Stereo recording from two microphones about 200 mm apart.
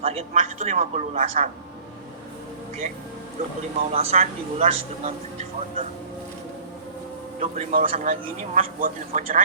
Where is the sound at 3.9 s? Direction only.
30° right (ahead or behind).